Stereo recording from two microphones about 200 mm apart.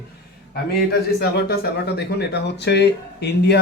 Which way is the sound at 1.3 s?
50° left (ahead or behind).